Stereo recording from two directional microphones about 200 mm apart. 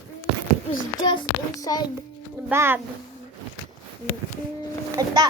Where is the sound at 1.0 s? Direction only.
20° left (ahead or behind).